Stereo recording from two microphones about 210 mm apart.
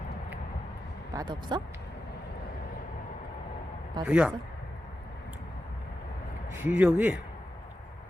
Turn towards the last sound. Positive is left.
turn(degrees=-5)  # may be behind; listen again after turning